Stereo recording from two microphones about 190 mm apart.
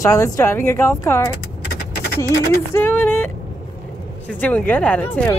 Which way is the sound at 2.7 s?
10° left (ahead or behind).